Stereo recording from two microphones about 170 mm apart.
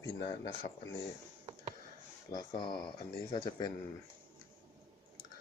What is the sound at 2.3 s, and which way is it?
Speech, 25° left (ahead or behind).